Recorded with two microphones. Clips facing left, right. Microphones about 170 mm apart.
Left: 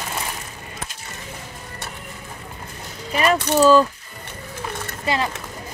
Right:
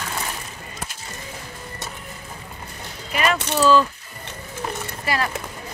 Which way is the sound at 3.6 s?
45° left (ahead or behind).